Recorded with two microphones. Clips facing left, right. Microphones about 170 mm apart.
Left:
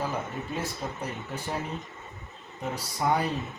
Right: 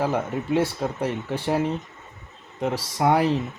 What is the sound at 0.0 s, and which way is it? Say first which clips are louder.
Speech: right 7 dB; 80° right.